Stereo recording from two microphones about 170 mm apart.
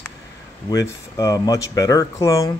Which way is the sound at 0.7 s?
20° left (ahead or behind).